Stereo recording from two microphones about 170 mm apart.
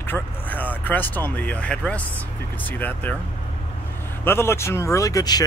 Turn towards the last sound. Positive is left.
turn(degrees=20)  # may be behind; listen again after turning